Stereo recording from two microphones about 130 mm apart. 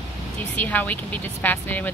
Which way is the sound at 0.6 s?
15° left (ahead or behind).